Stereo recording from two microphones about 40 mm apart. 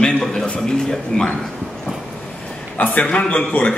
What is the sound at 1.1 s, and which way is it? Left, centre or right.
Speech, centre.